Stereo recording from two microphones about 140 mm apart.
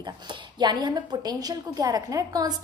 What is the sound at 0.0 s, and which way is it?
A woman's voice, 30° right (ahead or behind).